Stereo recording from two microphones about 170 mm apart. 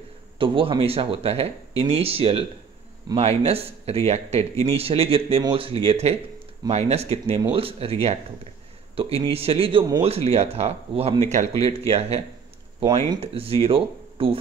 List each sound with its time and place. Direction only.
0.4 s speech: 30° right (ahead or behind)